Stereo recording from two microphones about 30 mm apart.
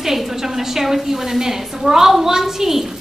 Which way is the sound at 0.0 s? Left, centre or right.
Centre.